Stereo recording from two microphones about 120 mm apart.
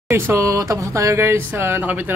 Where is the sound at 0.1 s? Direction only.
25° right (ahead or behind).